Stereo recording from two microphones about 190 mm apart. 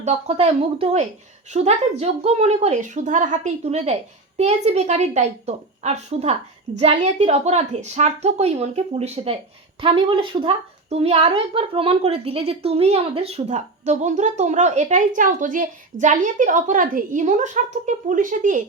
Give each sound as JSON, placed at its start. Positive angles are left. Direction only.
{"t": 0.0, "sound": "speech", "side_deg": -35}